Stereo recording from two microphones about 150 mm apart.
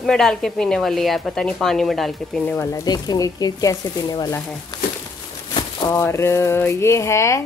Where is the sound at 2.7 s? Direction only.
25° left (ahead or behind).